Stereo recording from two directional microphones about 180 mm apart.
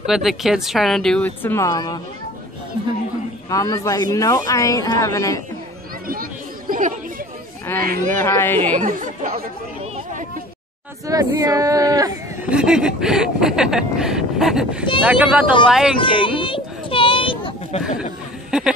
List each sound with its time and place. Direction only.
0.0 s speech: centre (ahead or behind); by 2.0 s 20° left (ahead or behind)
3.4 s speech: 20° left (ahead or behind)
6.7 s chatter: 50° right (ahead or behind)
7.8 s speech: 55° right (ahead or behind)
8.2 s speech: 15° left (ahead or behind)
8.7 s speech: 45° right (ahead or behind)
11.1 s speech: 20° right (ahead or behind)
12.4 s speech: 5° right (ahead or behind)
16.0 s a sound: 30° left (ahead or behind)
18.5 s a sound: 5° right (ahead or behind)